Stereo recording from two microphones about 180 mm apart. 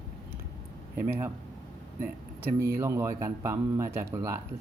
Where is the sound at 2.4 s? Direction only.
15° right (ahead or behind).